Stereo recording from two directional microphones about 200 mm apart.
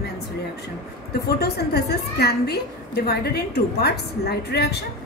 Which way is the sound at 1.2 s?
55° left (ahead or behind).